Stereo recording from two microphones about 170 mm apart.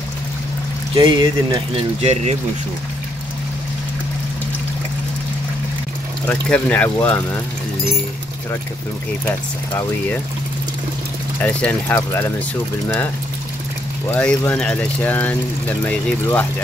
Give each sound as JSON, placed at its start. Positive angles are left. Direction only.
{"t": 0.9, "sound": "speech", "side_deg": -25}
{"t": 2.0, "sound": "speech", "side_deg": -40}
{"t": 6.2, "sound": "speech", "side_deg": 10}
{"t": 11.4, "sound": "speech", "side_deg": 10}
{"t": 14.1, "sound": "speech", "side_deg": 10}